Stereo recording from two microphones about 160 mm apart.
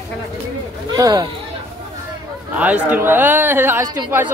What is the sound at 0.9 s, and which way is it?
Speech, 25° right (ahead or behind).